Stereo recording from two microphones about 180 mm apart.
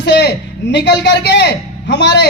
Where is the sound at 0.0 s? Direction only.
70° left (ahead or behind).